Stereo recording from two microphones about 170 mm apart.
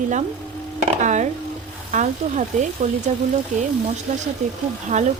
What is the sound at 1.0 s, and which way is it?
Speech, 45° right (ahead or behind).